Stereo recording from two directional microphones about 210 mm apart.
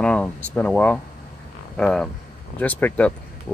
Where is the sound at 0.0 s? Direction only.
5° left (ahead or behind).